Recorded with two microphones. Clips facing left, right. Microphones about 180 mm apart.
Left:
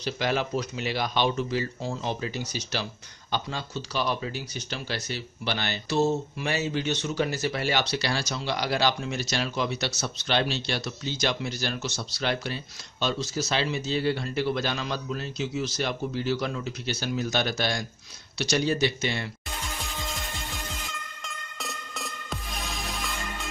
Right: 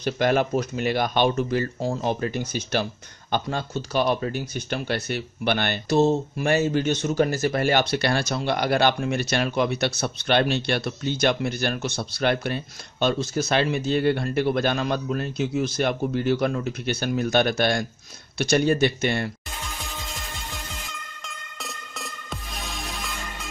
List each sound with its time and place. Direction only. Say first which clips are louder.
0.0 s speech: right 6 dB; 50° right (ahead or behind)
19.8 s music: left 1 dB; centre (ahead or behind)